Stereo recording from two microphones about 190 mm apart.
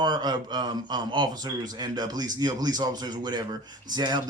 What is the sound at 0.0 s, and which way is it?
Speech, 20° right (ahead or behind).